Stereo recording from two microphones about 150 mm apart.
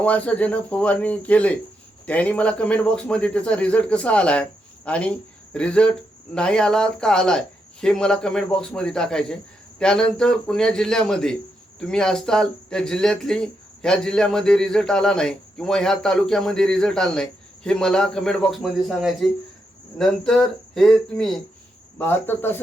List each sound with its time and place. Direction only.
0.0 s speech: 10° left (ahead or behind)
21.9 s speech: 15° left (ahead or behind)